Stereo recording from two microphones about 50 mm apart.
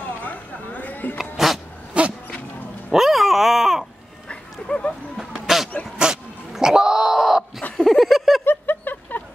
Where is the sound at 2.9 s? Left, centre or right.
Centre.